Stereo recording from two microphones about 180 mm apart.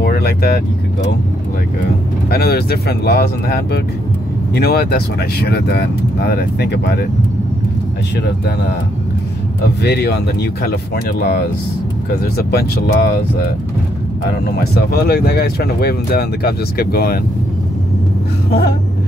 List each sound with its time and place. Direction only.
0.0 s vehicle: 60° left (ahead or behind)
2.2 s speech: 60° left (ahead or behind)
9.8 s speech: 65° left (ahead or behind)
12.4 s speech: 65° left (ahead or behind)
14.4 s speech: 60° left (ahead or behind)
18.5 s speech: 65° left (ahead or behind)